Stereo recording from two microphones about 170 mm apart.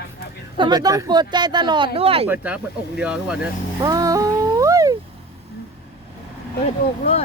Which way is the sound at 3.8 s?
20° right (ahead or behind).